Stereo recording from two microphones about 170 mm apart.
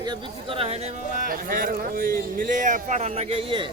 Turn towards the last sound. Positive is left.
turn(degrees=-35)  # may be behind; listen again after turning